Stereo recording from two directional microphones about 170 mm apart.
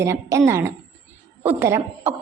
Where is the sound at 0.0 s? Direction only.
15° right (ahead or behind).